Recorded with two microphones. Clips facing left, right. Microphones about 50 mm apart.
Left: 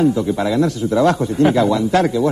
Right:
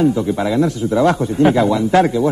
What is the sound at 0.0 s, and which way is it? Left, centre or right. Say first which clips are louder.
A man's voice: even; centre.